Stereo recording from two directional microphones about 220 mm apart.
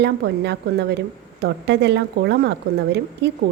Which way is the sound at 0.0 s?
50° right (ahead or behind).